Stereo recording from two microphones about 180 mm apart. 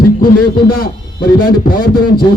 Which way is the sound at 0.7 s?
55° left (ahead or behind).